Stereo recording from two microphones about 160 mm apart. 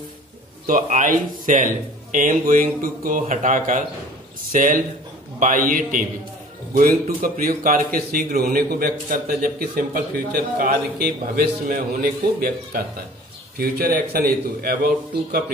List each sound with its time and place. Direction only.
0.7 s a man's voice: 55° right (ahead or behind); by 14.8 s 70° right (ahead or behind)